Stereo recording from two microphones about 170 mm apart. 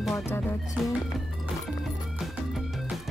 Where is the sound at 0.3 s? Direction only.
15° left (ahead or behind).